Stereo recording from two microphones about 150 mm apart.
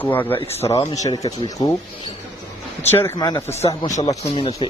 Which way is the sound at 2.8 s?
15° left (ahead or behind).